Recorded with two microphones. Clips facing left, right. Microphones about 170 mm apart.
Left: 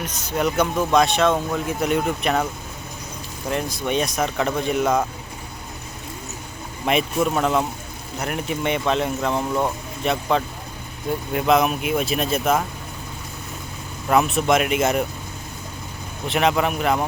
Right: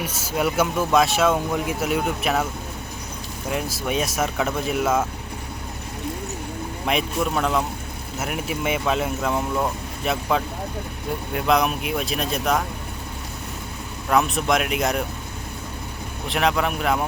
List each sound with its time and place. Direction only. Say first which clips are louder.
0.0 s speech: left 1 dB; 5° right (ahead or behind)
3.5 s speech: left 2 dB; 5° right (ahead or behind)
6.8 s speech: left 3 dB; centre (ahead or behind)
14.1 s speech: left 2 dB; 5° left (ahead or behind)
16.2 s speech: left 2 dB; centre (ahead or behind)